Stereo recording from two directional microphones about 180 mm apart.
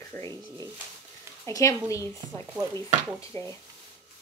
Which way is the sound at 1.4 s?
15° left (ahead or behind).